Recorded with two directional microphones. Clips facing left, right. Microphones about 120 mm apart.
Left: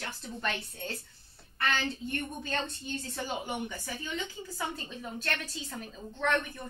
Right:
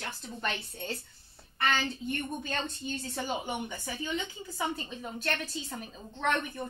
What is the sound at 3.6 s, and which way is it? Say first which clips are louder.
A woman's voice: right 2 dB; 15° right (ahead or behind).